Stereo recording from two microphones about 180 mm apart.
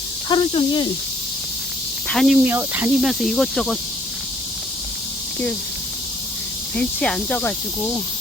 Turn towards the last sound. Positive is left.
turn(degrees=5)  # may be behind; listen again after turning